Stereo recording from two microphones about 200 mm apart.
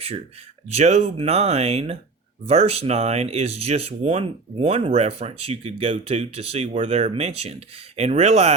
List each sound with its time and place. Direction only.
0.7 s speech: 30° right (ahead or behind)